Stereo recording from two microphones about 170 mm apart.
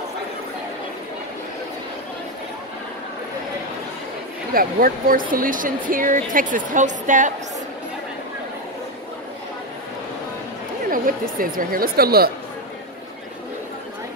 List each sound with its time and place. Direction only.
4.6 s a woman's voice: 55° right (ahead or behind)
10.9 s speech: 55° right (ahead or behind)